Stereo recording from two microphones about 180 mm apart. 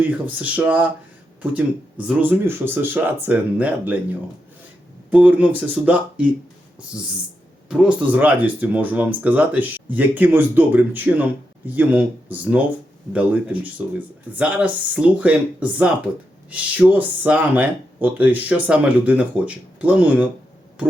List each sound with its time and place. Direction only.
0.0 s speech: 10° right (ahead or behind)
7.7 s speech: 5° right (ahead or behind)